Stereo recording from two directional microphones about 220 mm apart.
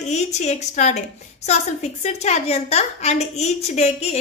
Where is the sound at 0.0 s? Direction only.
30° left (ahead or behind).